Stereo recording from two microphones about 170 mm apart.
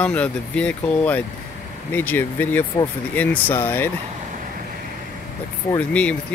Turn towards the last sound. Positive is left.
turn(degrees=5)  # may be behind; listen again after turning